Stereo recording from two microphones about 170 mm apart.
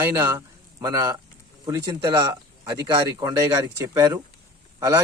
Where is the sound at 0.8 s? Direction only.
25° right (ahead or behind).